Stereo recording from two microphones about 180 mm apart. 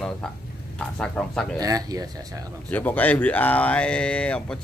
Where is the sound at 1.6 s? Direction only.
20° right (ahead or behind).